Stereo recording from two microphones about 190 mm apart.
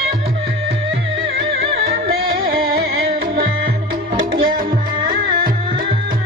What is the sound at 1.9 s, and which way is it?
Music, 55° right (ahead or behind).